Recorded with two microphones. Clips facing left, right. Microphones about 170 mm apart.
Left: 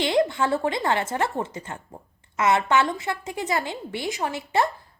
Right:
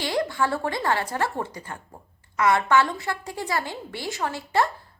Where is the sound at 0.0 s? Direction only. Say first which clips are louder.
Left 3 dB; 20° left (ahead or behind).